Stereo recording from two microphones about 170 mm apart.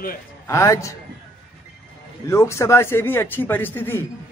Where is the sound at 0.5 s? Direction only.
15° left (ahead or behind).